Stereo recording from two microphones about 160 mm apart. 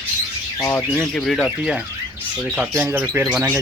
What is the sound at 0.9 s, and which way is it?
Speech, 5° left (ahead or behind).